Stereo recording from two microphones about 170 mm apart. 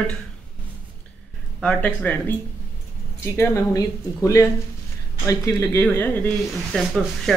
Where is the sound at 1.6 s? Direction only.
10° left (ahead or behind).